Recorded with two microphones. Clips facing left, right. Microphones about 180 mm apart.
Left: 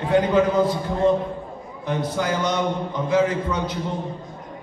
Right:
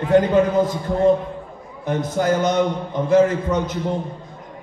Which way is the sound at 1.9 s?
45° right (ahead or behind).